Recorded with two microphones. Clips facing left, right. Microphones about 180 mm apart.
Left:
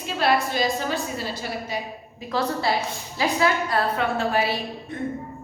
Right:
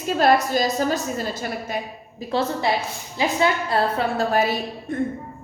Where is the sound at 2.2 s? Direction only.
30° right (ahead or behind); by 5.0 s 45° right (ahead or behind).